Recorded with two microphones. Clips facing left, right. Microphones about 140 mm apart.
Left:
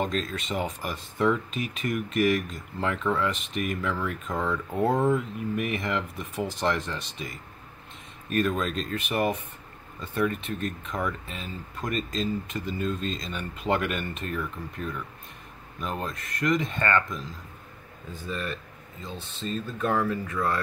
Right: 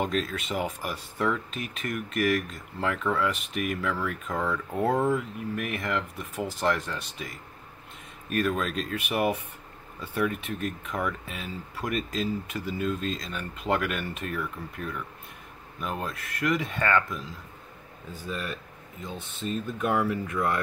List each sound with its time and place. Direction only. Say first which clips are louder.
0.0 s speech: even; 5° right (ahead or behind)